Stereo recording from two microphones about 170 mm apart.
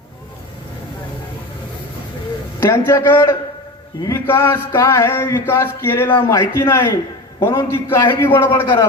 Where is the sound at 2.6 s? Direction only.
15° left (ahead or behind).